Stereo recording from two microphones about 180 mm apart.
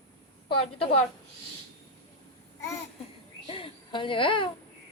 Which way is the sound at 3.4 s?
30° left (ahead or behind).